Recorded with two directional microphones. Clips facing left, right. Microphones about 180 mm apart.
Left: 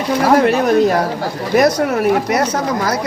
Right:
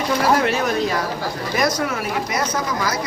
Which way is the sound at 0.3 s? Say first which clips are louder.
Left 8 dB; 50° left (ahead or behind).